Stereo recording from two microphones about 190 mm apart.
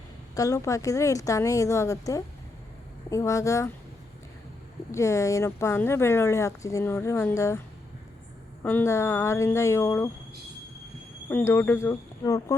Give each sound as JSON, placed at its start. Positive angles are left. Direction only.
{"t": 0.3, "sound": "speech", "side_deg": 15}
{"t": 4.9, "sound": "speech", "side_deg": 15}
{"t": 8.6, "sound": "speech", "side_deg": 10}
{"t": 11.3, "sound": "speech", "side_deg": 10}